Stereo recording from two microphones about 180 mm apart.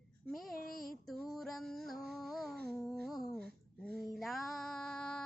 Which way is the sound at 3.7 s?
5° left (ahead or behind).